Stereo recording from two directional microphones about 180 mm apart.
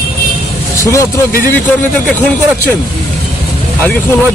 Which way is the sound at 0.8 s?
15° left (ahead or behind).